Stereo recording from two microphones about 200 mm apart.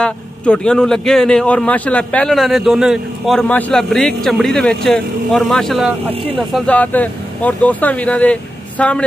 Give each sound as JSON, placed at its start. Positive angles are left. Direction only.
{"t": 0.0, "sound": "speech", "side_deg": 5}